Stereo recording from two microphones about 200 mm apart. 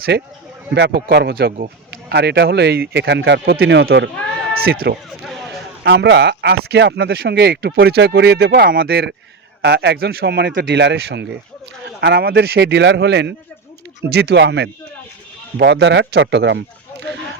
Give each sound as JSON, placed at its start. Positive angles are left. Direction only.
{"t": 0.1, "sound": "a man's voice", "side_deg": -60}
{"t": 5.2, "sound": "a sound", "side_deg": 0}
{"t": 5.8, "sound": "speech", "side_deg": -60}